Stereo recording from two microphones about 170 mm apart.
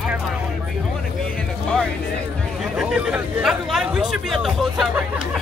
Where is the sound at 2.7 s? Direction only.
5° right (ahead or behind).